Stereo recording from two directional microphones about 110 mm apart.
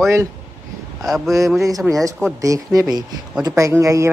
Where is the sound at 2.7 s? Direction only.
35° right (ahead or behind).